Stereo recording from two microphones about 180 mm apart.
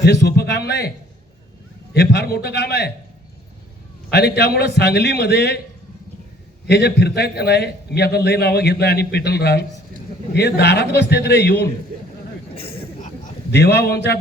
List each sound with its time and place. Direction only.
0.0 s a man's voice: 70° left (ahead or behind)
4.1 s a man's voice: 65° left (ahead or behind)
6.7 s a man's voice: 65° left (ahead or behind)
13.5 s a man's voice: 65° left (ahead or behind)